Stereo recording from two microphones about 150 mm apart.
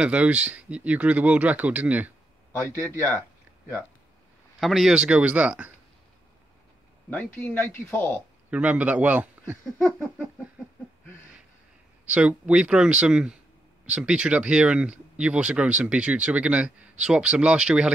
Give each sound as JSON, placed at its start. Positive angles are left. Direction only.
{"t": 0.0, "sound": "speech", "side_deg": -10}
{"t": 2.7, "sound": "speech", "side_deg": -20}
{"t": 4.6, "sound": "speech", "side_deg": 0}
{"t": 7.3, "sound": "speech", "side_deg": 15}
{"t": 8.5, "sound": "speech", "side_deg": -10}
{"t": 12.1, "sound": "speech", "side_deg": -10}